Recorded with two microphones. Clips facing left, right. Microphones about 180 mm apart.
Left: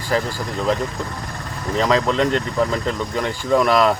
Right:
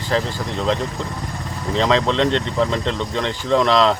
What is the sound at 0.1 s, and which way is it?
Speech, 10° left (ahead or behind).